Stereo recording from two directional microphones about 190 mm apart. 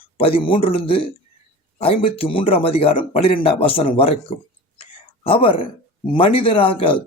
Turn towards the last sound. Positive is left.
turn(degrees=30)  # may be behind; listen again after turning